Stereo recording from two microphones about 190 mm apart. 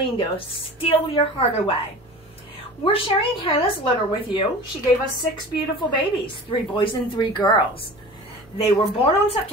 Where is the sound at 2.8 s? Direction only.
30° left (ahead or behind).